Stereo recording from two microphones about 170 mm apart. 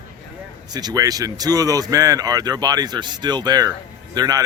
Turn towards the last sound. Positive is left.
turn(degrees=-20)  # may be behind; listen again after turning